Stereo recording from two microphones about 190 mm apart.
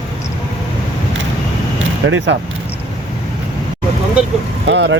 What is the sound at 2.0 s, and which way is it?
Speech, 70° right (ahead or behind).